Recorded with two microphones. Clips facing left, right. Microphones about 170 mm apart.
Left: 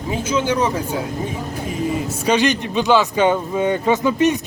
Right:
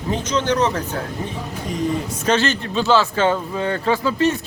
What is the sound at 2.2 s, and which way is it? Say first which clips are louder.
Speech: left 2 dB; 15° left (ahead or behind).